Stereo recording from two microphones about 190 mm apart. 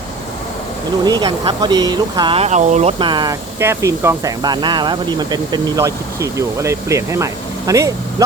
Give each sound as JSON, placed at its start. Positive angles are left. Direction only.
{"t": 1.0, "sound": "speech", "side_deg": -20}